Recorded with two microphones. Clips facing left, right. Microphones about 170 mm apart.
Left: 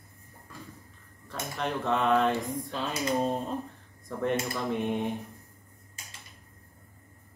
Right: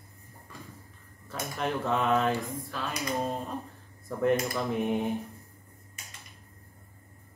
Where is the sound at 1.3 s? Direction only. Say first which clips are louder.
Right 1 dB; centre (ahead or behind).